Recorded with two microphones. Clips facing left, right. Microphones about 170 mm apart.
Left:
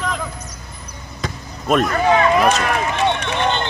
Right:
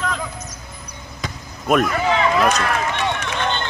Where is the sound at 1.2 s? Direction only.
Centre (ahead or behind).